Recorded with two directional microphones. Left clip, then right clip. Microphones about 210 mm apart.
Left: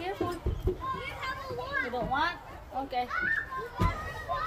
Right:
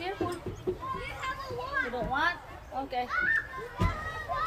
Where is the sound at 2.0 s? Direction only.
Centre (ahead or behind).